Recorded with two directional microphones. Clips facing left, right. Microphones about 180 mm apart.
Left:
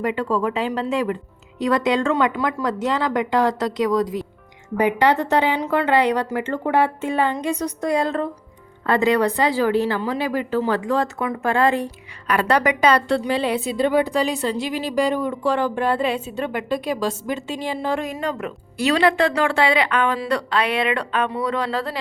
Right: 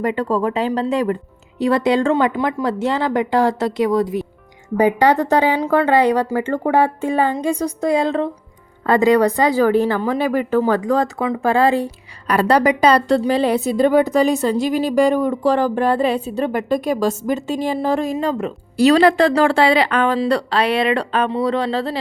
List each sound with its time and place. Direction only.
0.0 s a woman's voice: 40° right (ahead or behind)
4.8 s a woman's voice: 35° right (ahead or behind)
7.8 s a woman's voice: 25° right (ahead or behind)
9.1 s a woman's voice: 40° right (ahead or behind)